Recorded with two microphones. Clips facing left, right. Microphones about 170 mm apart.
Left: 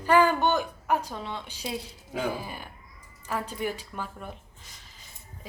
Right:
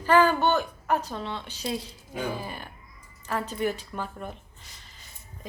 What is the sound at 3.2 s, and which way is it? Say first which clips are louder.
Speech: right 3 dB; 10° left (ahead or behind).